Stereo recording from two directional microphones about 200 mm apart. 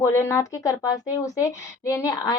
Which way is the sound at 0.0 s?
15° left (ahead or behind).